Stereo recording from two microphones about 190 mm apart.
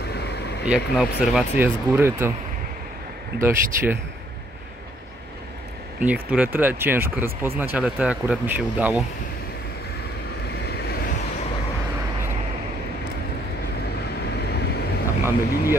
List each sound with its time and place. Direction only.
0.0 s vehicle: 60° left (ahead or behind)
0.7 s speech: 5° right (ahead or behind)
3.3 s speech: 15° right (ahead or behind)
5.9 s speech: 5° right (ahead or behind)
10.5 s vehicle: 60° left (ahead or behind)
14.5 s vehicle: 60° left (ahead or behind)
15.2 s speech: 15° right (ahead or behind)